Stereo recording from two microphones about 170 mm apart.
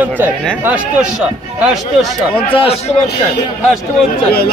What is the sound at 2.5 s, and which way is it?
Speech, 35° left (ahead or behind).